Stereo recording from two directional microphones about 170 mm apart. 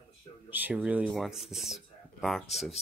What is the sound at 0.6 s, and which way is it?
Speech, 10° right (ahead or behind).